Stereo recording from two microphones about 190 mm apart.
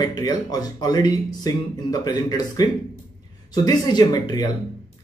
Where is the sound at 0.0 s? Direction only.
20° left (ahead or behind).